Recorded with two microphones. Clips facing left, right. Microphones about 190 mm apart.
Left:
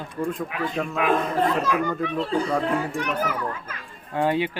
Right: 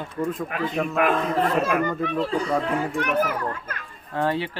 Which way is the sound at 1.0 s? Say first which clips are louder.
Even; 55° right (ahead or behind).